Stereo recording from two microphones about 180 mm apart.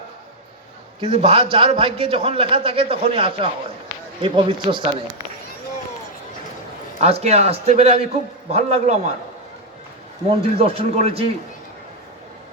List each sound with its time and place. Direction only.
1.0 s a man's voice: 35° right (ahead or behind)
7.0 s a man's voice: 35° right (ahead or behind)
10.2 s a man's voice: 35° right (ahead or behind)